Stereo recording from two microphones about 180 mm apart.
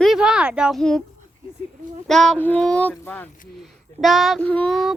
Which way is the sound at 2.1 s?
Centre (ahead or behind).